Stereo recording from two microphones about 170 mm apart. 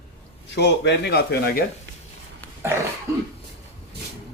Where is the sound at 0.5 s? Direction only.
85° left.